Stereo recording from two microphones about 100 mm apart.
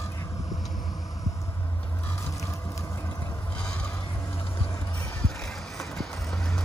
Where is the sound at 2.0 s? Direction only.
25° left (ahead or behind).